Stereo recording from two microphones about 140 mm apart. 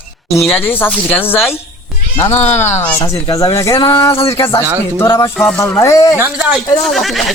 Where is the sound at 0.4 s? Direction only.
15° left (ahead or behind).